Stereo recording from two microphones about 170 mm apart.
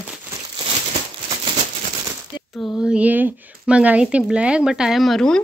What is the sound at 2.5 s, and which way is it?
A woman's voice, centre (ahead or behind).